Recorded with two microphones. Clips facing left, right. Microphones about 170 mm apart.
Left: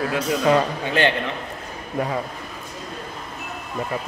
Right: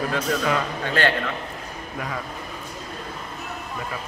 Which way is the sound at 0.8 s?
20° left (ahead or behind).